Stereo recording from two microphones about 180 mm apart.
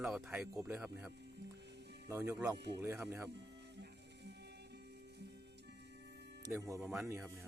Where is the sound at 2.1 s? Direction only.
10° right (ahead or behind).